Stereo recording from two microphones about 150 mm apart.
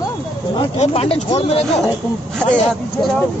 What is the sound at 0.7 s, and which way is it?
Speech, 40° left (ahead or behind).